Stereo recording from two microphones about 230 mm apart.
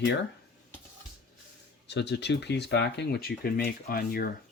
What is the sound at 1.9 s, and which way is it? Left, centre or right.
Speech, left.